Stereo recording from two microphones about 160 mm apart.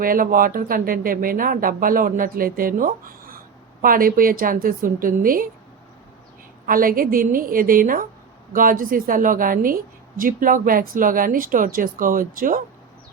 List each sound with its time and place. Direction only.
0.0 s speech: 60° right (ahead or behind)
6.7 s speech: 60° right (ahead or behind)